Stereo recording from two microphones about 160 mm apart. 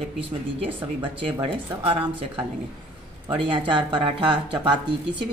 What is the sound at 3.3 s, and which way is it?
Speech, 30° right (ahead or behind).